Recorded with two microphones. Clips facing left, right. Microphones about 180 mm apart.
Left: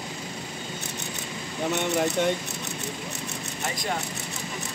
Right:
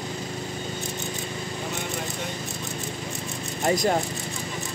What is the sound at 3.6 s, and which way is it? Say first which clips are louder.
Speech: right 9 dB; 40° right (ahead or behind).